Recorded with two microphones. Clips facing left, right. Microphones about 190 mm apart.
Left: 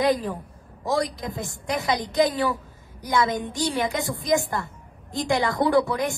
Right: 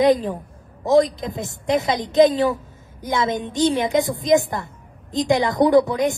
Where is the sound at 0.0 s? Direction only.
20° right (ahead or behind).